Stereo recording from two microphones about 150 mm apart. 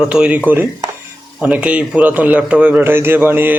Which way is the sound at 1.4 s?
10° right (ahead or behind).